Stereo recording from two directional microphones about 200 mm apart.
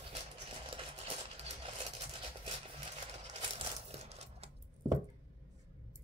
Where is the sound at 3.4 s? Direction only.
30° right (ahead or behind).